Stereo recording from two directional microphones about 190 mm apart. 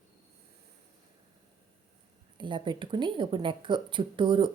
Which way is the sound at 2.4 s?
25° right (ahead or behind).